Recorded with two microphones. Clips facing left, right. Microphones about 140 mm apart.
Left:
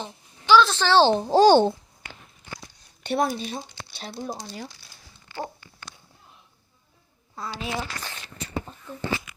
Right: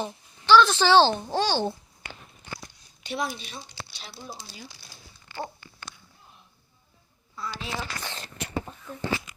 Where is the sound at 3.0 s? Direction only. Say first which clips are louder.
Left 7 dB; 50° left (ahead or behind).